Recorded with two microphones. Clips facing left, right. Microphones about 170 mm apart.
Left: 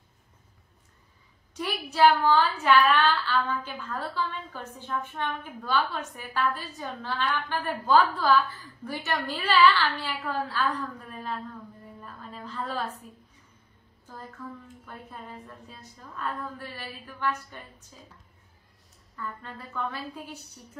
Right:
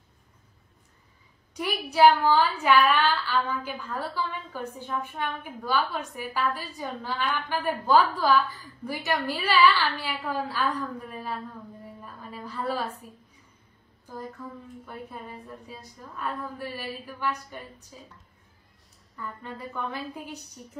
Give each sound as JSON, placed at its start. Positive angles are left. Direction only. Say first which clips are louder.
{"t": 1.5, "sound": "a woman's voice", "louder": "right 2 dB", "side_deg": -10}
{"t": 12.0, "sound": "a sound", "louder": "even", "side_deg": -10}
{"t": 14.0, "sound": "a woman's voice", "louder": "right 3 dB", "side_deg": -10}
{"t": 19.1, "sound": "a woman's voice", "louder": "right 1 dB", "side_deg": -15}